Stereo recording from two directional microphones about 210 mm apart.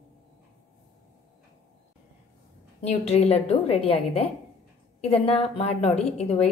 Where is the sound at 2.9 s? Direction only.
30° left (ahead or behind).